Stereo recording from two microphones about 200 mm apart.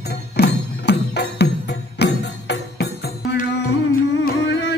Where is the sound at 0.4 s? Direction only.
55° left (ahead or behind).